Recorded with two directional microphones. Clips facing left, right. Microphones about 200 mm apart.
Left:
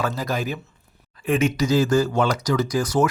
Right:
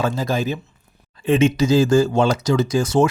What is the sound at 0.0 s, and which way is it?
Speech, 25° right (ahead or behind).